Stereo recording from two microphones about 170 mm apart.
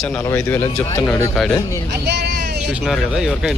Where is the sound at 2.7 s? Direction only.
5° right (ahead or behind).